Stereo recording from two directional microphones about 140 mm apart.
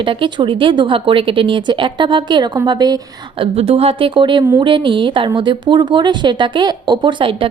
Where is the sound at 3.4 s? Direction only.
45° right (ahead or behind).